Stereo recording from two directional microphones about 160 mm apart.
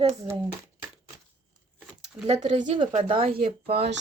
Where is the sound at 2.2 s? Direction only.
35° right (ahead or behind).